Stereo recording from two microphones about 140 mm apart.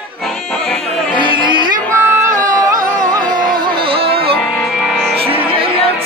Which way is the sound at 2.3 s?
25° right (ahead or behind).